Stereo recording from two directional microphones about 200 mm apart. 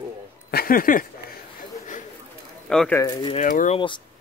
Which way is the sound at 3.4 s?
40° left (ahead or behind).